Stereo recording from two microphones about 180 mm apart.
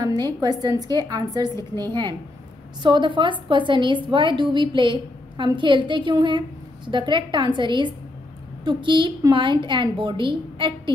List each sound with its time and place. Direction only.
0.0 s a woman's voice: 20° right (ahead or behind)